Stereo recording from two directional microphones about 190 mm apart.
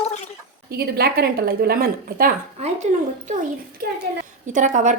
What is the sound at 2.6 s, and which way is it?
Speech, 40° right (ahead or behind).